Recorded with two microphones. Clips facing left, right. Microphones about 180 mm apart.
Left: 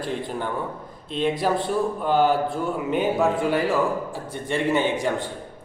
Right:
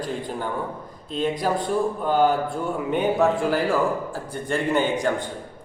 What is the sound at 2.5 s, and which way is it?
A man's voice, centre (ahead or behind).